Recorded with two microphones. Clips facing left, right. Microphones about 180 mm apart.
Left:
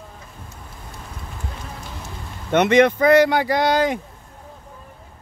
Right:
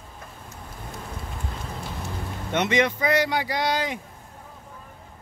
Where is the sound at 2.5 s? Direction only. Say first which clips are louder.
Left 8 dB; 55° left (ahead or behind).